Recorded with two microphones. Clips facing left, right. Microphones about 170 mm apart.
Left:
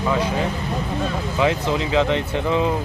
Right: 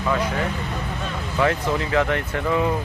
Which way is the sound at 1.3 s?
15° left (ahead or behind).